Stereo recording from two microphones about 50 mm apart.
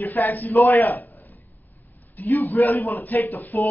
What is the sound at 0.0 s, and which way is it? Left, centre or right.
Speech, left.